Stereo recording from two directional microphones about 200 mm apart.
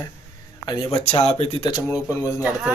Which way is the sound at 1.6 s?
20° left (ahead or behind).